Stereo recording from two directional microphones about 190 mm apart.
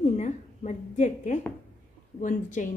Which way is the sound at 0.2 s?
40° left (ahead or behind).